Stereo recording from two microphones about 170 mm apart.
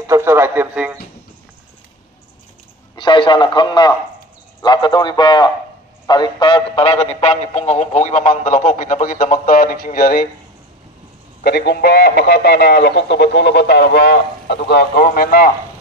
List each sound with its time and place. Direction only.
0.0 s a man's voice: 15° right (ahead or behind)
3.0 s a man's voice: 30° left (ahead or behind); by 10.2 s 60° left (ahead or behind)
11.4 s speech: 70° left (ahead or behind)